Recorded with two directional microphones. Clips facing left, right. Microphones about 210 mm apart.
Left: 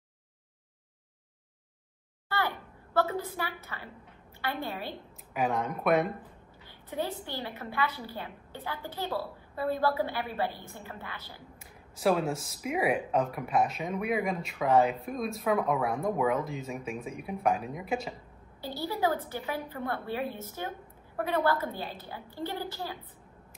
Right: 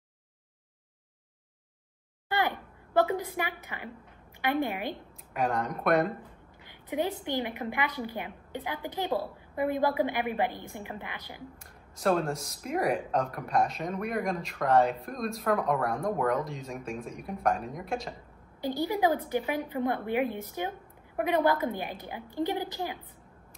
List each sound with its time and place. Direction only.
2.2 s a sound: 15° right (ahead or behind)
4.4 s a woman's voice: 15° right (ahead or behind)
5.3 s speech: centre (ahead or behind)
6.7 s a woman's voice: 15° right (ahead or behind)
11.6 s speech: 5° left (ahead or behind)
18.6 s a woman's voice: 15° right (ahead or behind)